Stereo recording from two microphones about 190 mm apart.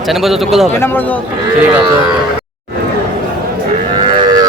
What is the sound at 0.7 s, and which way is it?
Speech, 10° left (ahead or behind).